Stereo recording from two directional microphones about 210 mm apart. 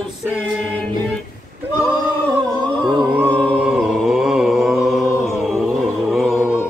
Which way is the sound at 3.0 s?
5° right (ahead or behind).